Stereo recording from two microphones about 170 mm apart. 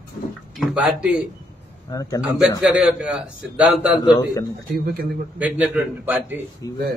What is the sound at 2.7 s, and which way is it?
A man's voice, 5° right (ahead or behind).